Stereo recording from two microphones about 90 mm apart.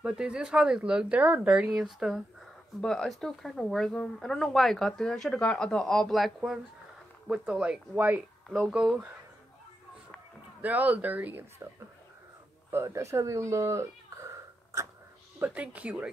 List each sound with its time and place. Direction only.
0.0 s speech: 10° right (ahead or behind)
8.5 s speech: 5° left (ahead or behind)
10.6 s speech: 15° right (ahead or behind)
12.7 s speech: 30° right (ahead or behind)
15.3 s speech: 20° right (ahead or behind)